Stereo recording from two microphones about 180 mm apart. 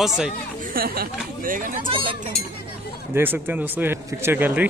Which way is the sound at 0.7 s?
55° right (ahead or behind).